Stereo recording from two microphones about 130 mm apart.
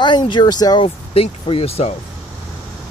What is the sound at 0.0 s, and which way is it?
Speech, 35° left (ahead or behind).